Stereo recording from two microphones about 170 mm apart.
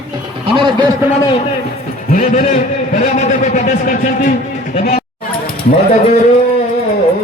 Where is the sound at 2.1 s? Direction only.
50° left (ahead or behind).